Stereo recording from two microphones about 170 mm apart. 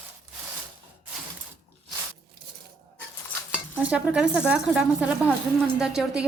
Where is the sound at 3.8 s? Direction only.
5° right (ahead or behind).